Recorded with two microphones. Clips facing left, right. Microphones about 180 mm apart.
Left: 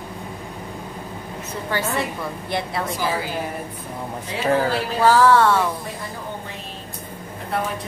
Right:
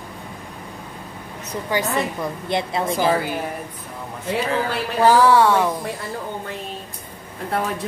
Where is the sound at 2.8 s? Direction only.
50° right (ahead or behind).